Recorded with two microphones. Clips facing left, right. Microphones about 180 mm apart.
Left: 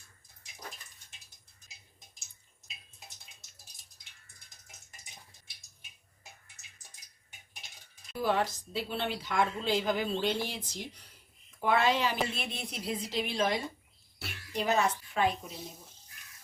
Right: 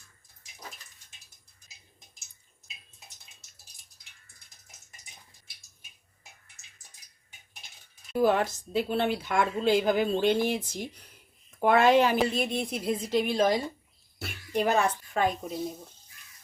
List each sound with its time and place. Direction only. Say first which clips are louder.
8.1 s a woman's voice: right 6 dB; 50° right (ahead or behind)
14.2 s a woman's voice: right 7 dB; 50° right (ahead or behind)